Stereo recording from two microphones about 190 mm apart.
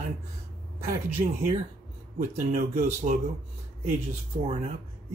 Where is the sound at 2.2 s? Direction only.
40° right (ahead or behind).